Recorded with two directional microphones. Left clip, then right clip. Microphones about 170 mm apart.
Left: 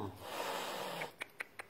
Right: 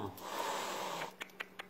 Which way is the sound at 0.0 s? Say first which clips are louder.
Right 2 dB; 10° left (ahead or behind).